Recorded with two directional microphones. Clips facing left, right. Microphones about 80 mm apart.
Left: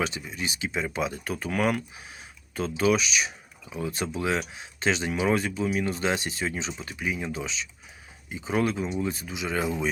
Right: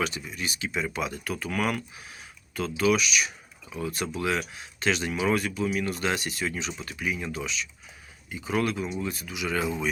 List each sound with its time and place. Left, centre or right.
0.0 s speech: left